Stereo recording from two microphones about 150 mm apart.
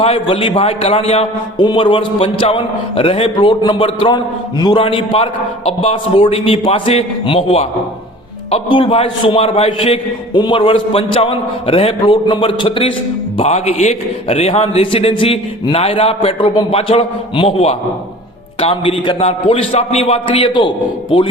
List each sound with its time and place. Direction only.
0.0 s a man's voice: 35° left (ahead or behind)